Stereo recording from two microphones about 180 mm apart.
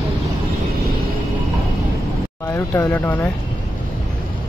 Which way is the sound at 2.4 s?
15° left (ahead or behind).